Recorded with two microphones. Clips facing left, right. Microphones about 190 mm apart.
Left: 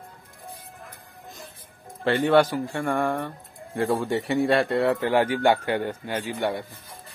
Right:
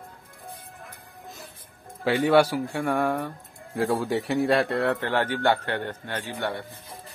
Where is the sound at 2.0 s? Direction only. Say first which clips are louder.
Even; 5° right (ahead or behind).